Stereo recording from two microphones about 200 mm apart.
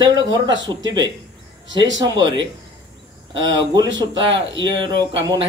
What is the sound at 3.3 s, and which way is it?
Speech, 20° right (ahead or behind).